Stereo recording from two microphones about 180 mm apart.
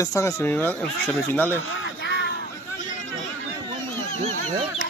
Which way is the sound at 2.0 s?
70° left (ahead or behind).